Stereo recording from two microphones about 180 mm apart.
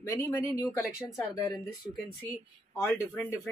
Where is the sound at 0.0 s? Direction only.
15° left (ahead or behind).